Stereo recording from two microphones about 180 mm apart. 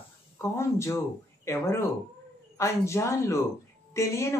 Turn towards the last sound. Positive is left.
turn(degrees=15)  # may be behind; listen again after turning